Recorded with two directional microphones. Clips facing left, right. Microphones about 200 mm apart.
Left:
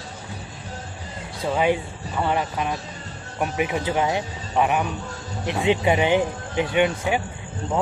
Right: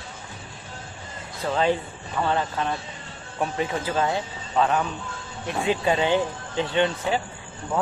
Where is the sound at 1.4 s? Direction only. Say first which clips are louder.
Left 2 dB; 10° left (ahead or behind).